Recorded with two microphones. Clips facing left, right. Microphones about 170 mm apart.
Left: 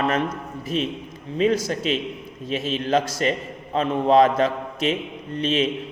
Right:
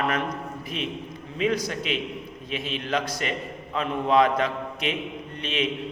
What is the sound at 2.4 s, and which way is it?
A man's voice, 40° left (ahead or behind).